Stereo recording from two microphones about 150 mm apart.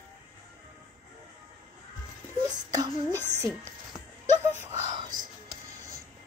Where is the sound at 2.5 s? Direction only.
25° right (ahead or behind).